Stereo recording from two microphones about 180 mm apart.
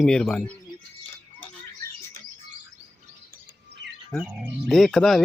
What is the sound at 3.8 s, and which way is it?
Bird, 80° right.